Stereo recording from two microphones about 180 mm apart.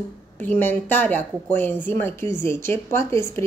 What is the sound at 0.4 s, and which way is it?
Speech, 10° left (ahead or behind).